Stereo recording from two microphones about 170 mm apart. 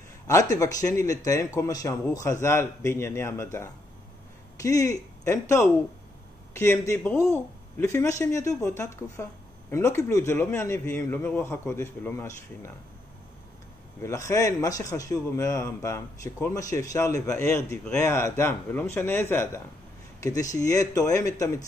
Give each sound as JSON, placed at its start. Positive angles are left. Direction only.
{"t": 0.3, "sound": "a man's voice", "side_deg": 20}
{"t": 4.6, "sound": "a man's voice", "side_deg": 20}
{"t": 14.0, "sound": "a man's voice", "side_deg": 20}